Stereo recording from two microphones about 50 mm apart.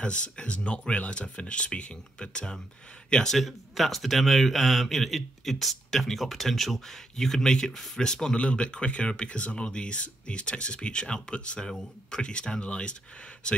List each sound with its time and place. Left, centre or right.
0.0 s speech: left
3.3 s speech: centre